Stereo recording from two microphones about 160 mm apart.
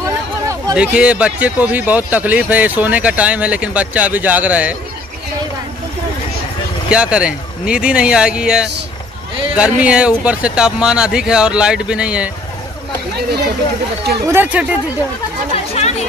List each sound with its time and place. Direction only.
0.0 s a sound: 20° right (ahead or behind)
0.7 s speech: 5° right (ahead or behind)
6.9 s speech: 5° right (ahead or behind)
14.2 s speech: 15° right (ahead or behind)
15.5 s speech: 40° left (ahead or behind)